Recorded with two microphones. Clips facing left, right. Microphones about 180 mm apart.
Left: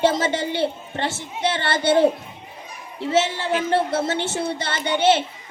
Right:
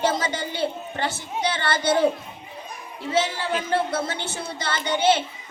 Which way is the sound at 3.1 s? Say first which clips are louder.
Left 3 dB; 25° left (ahead or behind).